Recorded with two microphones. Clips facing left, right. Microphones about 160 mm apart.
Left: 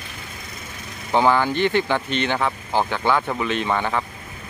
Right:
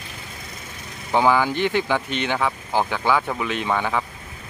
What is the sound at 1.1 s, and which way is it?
Speech, 10° right (ahead or behind).